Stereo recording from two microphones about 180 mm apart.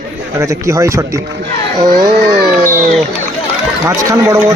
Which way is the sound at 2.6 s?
45° right (ahead or behind).